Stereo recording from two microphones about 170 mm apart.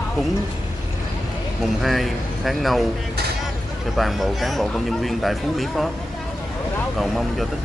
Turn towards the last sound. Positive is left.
turn(degrees=0)  # may be behind; listen again after turning